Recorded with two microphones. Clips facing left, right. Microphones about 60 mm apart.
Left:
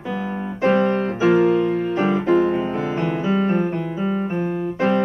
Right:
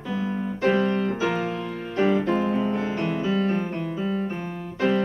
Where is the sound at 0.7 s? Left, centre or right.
Left.